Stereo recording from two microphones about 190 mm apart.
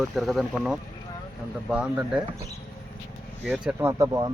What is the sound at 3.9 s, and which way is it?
Speech, 20° right (ahead or behind).